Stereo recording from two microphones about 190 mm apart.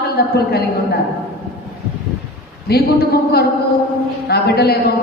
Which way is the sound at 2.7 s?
55° left (ahead or behind).